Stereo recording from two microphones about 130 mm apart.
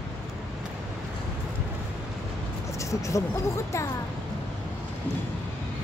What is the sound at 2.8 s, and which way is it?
Speech, 25° left (ahead or behind).